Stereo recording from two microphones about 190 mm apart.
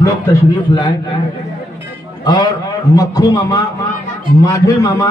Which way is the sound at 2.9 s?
20° left (ahead or behind).